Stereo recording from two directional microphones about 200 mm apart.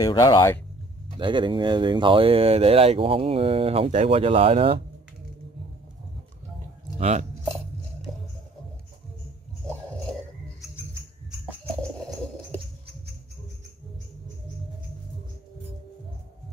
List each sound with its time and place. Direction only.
0.0 s speech: 20° left (ahead or behind)
1.1 s speech: 25° right (ahead or behind)
7.0 s speech: 35° right (ahead or behind)